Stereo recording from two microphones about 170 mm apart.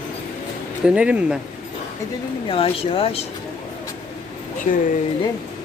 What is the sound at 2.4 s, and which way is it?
Speech, 35° left (ahead or behind).